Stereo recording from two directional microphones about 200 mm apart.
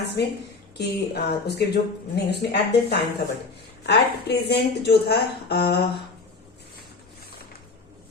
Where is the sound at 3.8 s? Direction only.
55° left (ahead or behind).